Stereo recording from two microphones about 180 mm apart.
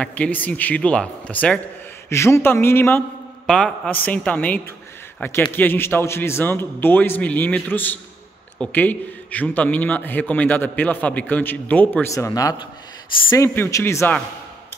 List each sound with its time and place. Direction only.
0.0 s a man's voice: 10° left (ahead or behind)